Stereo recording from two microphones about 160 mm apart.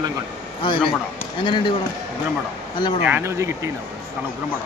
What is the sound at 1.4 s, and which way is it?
Speech, 30° left (ahead or behind).